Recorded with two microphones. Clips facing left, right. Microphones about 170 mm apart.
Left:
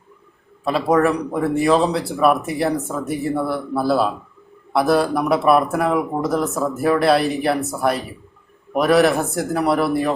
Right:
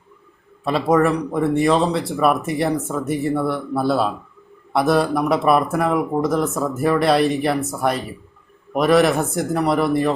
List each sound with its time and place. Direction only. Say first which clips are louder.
0.6 s speech: even; centre (ahead or behind)